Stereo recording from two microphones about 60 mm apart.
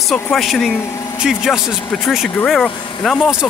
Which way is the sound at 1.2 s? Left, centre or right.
Centre.